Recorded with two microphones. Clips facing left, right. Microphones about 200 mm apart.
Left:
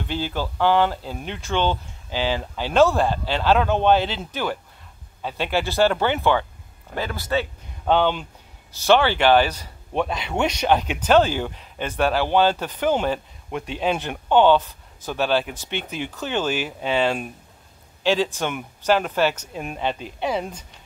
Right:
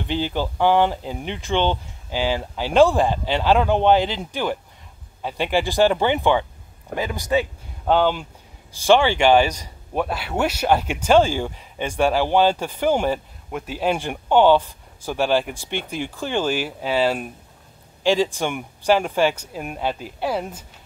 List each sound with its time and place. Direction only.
0.1 s speech: 15° right (ahead or behind)